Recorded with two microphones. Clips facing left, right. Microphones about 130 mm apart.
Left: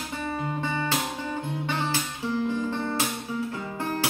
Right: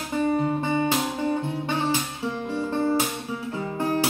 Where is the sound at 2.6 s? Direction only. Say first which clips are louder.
Right 4 dB; 30° right (ahead or behind).